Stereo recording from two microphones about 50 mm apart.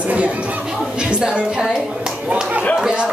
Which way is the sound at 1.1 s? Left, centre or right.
Centre.